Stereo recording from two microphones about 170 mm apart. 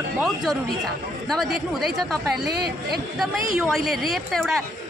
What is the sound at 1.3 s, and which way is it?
A man's voice, centre (ahead or behind).